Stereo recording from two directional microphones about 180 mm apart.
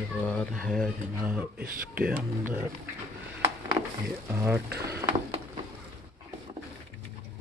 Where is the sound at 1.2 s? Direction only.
10° right (ahead or behind).